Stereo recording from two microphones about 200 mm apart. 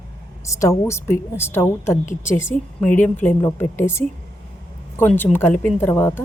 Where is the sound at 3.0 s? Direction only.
10° left (ahead or behind).